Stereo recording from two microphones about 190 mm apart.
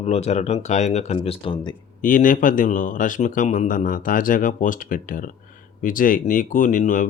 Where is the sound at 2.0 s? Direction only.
45° left (ahead or behind).